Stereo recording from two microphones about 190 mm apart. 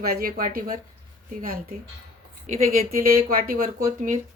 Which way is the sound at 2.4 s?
40° right (ahead or behind).